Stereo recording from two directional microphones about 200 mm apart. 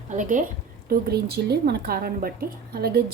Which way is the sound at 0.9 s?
50° right (ahead or behind).